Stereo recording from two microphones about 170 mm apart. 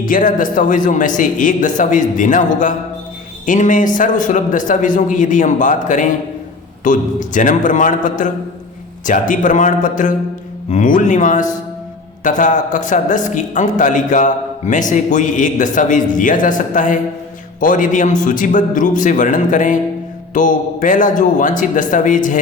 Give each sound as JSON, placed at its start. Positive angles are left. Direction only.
{"t": 0.0, "sound": "speech", "side_deg": 55}